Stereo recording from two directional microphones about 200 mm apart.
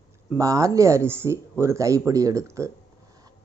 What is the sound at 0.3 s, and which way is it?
Speech, 15° right (ahead or behind).